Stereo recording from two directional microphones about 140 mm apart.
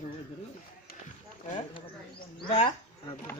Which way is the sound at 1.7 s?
35° left (ahead or behind).